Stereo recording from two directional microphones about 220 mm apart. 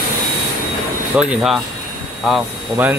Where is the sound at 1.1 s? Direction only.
5° right (ahead or behind).